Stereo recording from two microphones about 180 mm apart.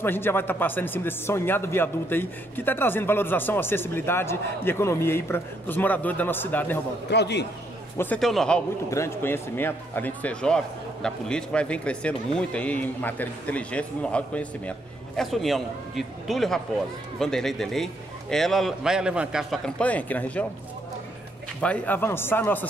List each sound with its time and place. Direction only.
0.0 s speech: 10° left (ahead or behind)
7.1 s a man's voice: 70° left (ahead or behind)
8.0 s a man's voice: 5° left (ahead or behind)
8.9 s a man's voice: 15° left (ahead or behind)
21.5 s speech: 10° left (ahead or behind)